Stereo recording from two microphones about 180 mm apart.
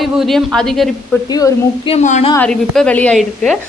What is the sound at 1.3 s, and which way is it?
Speech, 20° left (ahead or behind).